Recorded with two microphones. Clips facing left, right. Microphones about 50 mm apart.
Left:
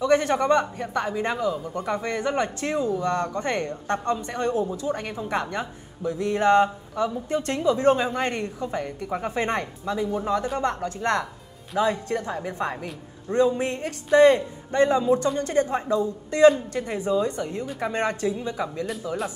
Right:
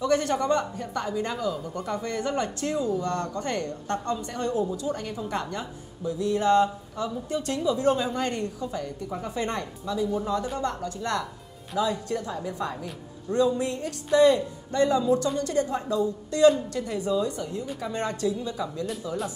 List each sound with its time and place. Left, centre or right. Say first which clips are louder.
0.0 s a man's voice: left 3 dB; left
1.5 s speech: left 3 dB; centre
1.9 s a man's voice: left 3 dB; left